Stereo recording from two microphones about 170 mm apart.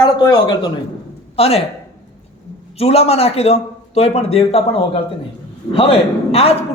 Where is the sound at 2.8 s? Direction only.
35° left (ahead or behind).